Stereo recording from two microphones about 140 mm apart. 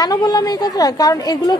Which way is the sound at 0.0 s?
25° left (ahead or behind).